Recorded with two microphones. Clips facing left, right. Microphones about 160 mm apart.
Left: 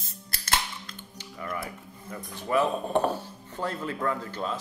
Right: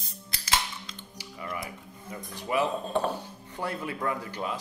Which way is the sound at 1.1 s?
15° right (ahead or behind).